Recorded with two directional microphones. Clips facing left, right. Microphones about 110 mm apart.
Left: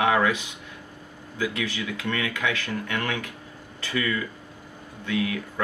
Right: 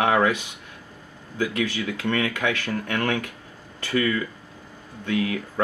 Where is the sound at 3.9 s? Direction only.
35° right (ahead or behind).